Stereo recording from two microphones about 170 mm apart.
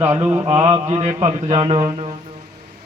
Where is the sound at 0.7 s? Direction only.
30° right (ahead or behind).